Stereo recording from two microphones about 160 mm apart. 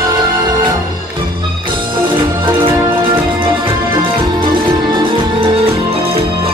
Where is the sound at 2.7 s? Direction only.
15° right (ahead or behind).